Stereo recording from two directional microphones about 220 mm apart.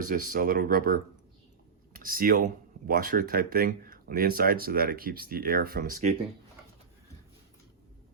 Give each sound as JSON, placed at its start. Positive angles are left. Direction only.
{"t": 0.0, "sound": "speech", "side_deg": -40}